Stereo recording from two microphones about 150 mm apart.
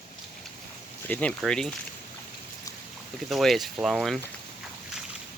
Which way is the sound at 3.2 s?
Centre (ahead or behind).